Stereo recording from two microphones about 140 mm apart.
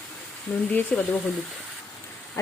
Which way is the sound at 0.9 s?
5° left (ahead or behind).